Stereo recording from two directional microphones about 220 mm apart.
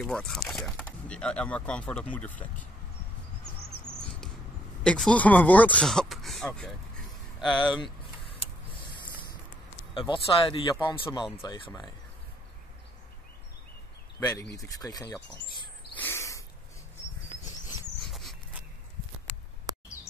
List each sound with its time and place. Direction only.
0.0 s speech: centre (ahead or behind)
4.8 s speech: 5° left (ahead or behind)
8.6 s vehicle: 20° left (ahead or behind)
9.9 s speech: 25° left (ahead or behind)
14.2 s speech: 15° left (ahead or behind)
16.0 s a sound: 10° left (ahead or behind)
18.1 s dog: centre (ahead or behind)